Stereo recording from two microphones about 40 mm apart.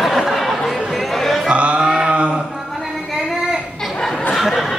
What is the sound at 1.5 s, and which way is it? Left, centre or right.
Music, right.